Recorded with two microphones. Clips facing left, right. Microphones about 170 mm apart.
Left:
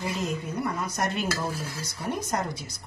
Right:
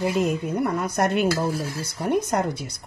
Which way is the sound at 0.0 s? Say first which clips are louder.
Right 8 dB; 60° right (ahead or behind).